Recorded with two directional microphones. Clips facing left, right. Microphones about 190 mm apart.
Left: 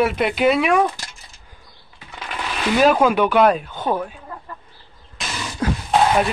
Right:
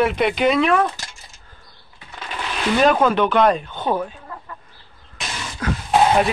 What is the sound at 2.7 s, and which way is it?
Speech, 5° left (ahead or behind).